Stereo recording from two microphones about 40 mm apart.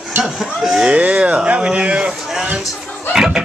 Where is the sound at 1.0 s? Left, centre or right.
Right.